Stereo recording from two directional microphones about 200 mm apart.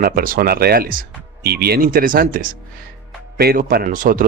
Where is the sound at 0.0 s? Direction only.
45° right (ahead or behind).